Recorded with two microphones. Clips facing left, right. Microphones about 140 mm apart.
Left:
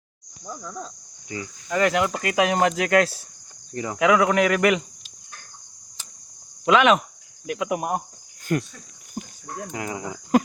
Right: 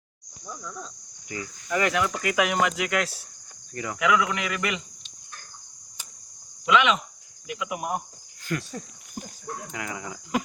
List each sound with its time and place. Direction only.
1.3 s speech: 25° left (ahead or behind)
3.8 s speech: 30° left (ahead or behind); by 4.8 s 55° left (ahead or behind)
6.7 s speech: 45° left (ahead or behind)
9.7 s speech: 35° left (ahead or behind)